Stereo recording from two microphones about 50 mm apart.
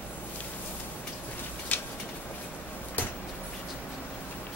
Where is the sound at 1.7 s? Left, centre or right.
Left.